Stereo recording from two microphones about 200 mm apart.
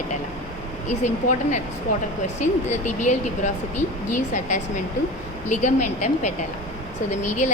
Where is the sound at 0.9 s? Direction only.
35° left (ahead or behind).